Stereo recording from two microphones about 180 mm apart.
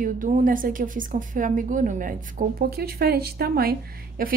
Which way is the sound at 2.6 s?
60° right (ahead or behind).